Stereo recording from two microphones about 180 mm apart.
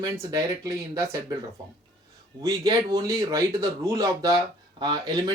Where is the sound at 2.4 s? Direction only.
20° right (ahead or behind).